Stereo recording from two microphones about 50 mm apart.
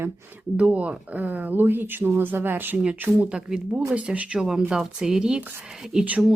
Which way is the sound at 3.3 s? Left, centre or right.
Centre.